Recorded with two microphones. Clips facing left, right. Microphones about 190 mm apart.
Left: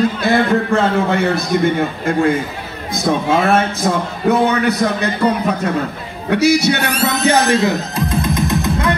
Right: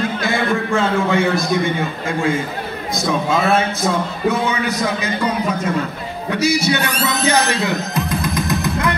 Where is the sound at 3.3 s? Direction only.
55° left (ahead or behind).